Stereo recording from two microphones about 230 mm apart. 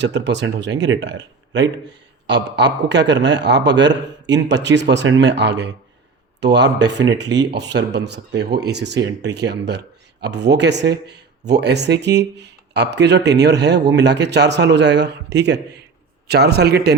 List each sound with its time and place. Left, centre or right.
0.0 s speech: right